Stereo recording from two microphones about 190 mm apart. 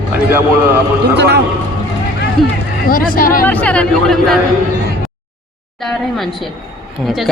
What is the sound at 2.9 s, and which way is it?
Speech, 50° left (ahead or behind).